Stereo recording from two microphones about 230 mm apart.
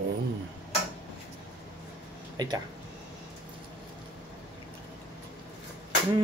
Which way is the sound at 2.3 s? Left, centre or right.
Centre.